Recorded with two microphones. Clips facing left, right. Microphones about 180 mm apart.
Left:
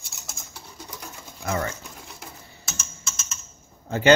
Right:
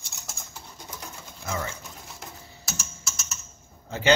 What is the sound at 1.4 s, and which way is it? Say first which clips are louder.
Pigeon: left 5 dB; 60° left (ahead or behind).